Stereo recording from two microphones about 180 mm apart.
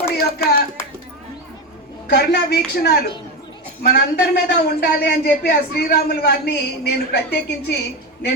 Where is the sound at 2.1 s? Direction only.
60° left (ahead or behind).